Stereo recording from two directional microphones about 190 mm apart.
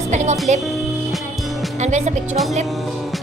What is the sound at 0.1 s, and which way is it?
Speech, 35° right (ahead or behind).